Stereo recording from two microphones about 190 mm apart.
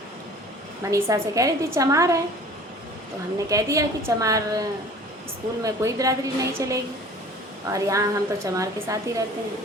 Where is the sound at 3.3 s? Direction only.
15° right (ahead or behind).